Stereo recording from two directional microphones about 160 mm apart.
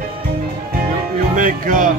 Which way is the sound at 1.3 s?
55° right (ahead or behind).